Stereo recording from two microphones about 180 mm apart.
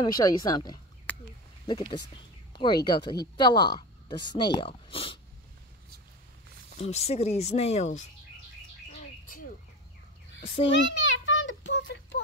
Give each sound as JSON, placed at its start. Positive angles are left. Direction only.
{"t": 0.0, "sound": "speech", "side_deg": 20}
{"t": 6.8, "sound": "speech", "side_deg": 35}
{"t": 10.4, "sound": "speech", "side_deg": 30}
{"t": 10.7, "sound": "a sound", "side_deg": 85}